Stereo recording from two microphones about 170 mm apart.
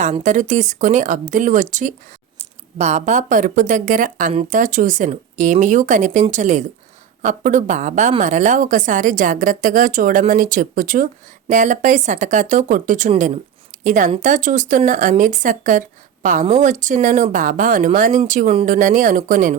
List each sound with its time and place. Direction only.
0.0 s a woman's voice: 45° right (ahead or behind)